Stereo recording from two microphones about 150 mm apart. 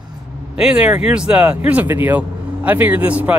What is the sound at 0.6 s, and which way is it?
Speech, 5° right (ahead or behind).